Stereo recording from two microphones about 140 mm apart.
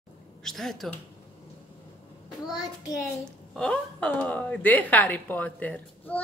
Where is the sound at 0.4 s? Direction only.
5° left (ahead or behind).